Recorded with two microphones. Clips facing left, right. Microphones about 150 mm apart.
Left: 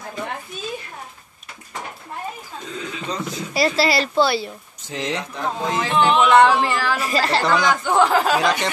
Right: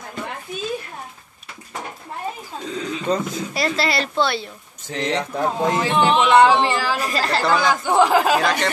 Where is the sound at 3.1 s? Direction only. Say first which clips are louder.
Right 7 dB; 50° right (ahead or behind).